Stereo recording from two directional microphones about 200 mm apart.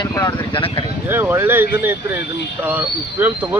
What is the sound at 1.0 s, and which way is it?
Speech, 10° right (ahead or behind).